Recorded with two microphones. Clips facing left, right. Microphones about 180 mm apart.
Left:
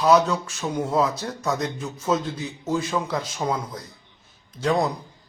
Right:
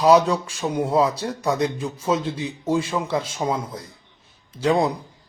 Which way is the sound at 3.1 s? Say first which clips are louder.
Right 3 dB; 25° right (ahead or behind).